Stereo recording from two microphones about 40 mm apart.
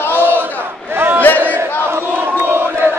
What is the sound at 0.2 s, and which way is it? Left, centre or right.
Battle cry, right.